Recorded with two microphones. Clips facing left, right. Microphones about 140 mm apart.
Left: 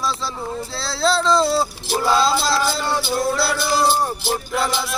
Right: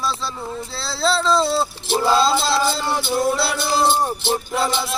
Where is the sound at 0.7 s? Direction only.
Centre (ahead or behind).